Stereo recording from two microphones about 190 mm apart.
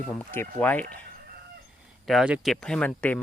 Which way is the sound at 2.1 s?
5° right (ahead or behind).